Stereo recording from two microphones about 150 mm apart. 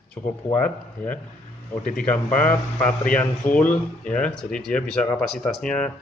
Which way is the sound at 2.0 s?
10° left (ahead or behind).